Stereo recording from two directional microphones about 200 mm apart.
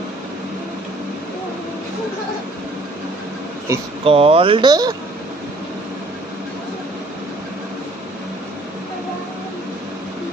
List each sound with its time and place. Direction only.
4.0 s speech: 30° right (ahead or behind)